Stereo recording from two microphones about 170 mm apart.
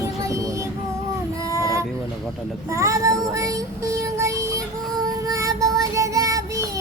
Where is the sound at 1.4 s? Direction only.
20° right (ahead or behind).